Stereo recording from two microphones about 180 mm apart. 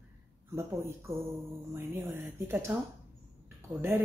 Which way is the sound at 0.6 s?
15° right (ahead or behind).